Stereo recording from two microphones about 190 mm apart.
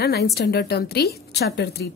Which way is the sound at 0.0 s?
55° left (ahead or behind).